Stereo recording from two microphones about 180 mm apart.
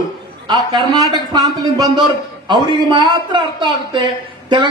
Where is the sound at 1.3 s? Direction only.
20° right (ahead or behind).